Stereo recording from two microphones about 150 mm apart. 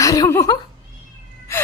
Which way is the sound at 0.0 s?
20° left (ahead or behind).